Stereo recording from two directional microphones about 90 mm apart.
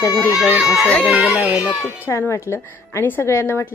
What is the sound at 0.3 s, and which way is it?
Speech, 15° right (ahead or behind).